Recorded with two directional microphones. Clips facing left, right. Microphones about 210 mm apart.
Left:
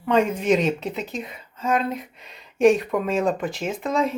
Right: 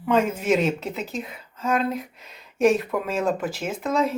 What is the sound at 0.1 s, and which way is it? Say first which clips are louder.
Speech: left 1 dB; 5° right (ahead or behind).